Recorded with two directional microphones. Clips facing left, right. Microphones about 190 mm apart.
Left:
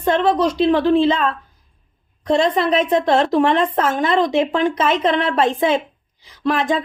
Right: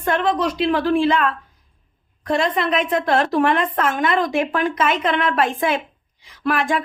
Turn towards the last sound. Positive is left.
turn(degrees=20)  # may be behind; listen again after turning